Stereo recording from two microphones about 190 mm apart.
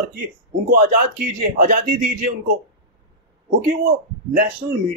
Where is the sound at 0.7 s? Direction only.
45° right (ahead or behind).